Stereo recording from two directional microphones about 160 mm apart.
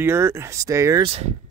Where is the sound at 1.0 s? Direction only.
35° right (ahead or behind).